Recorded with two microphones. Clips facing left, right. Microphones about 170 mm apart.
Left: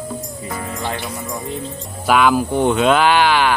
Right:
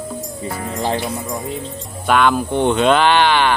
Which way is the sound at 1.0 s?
Centre (ahead or behind).